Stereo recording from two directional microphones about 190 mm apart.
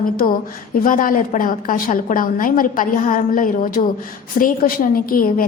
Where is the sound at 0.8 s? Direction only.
45° left (ahead or behind).